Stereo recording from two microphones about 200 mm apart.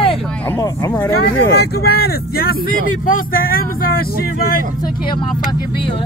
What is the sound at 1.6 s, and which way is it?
Speech, 50° left (ahead or behind).